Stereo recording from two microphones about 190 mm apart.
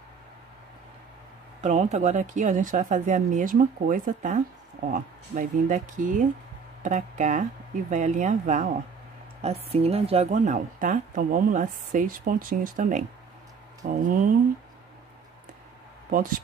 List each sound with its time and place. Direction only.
1.6 s a woman's voice: 40° right (ahead or behind)
16.1 s a woman's voice: 45° right (ahead or behind)